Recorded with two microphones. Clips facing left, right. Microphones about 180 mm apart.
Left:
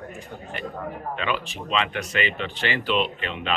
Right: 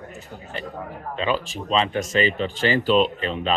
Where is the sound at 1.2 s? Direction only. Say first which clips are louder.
Right 6 dB; 35° right (ahead or behind).